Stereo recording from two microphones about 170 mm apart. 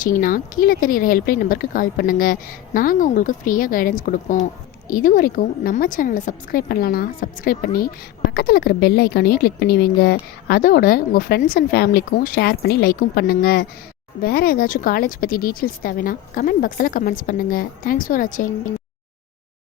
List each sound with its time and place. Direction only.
0.0 s speech: 55° left (ahead or behind)